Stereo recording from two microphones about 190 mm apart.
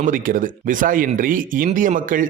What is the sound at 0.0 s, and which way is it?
Speech, 45° right (ahead or behind).